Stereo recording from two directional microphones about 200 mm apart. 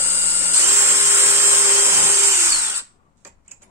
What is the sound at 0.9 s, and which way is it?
Dental drill, 10° right (ahead or behind).